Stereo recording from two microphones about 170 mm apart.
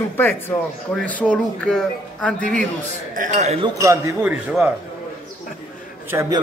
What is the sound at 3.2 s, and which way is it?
Speech, 40° right (ahead or behind).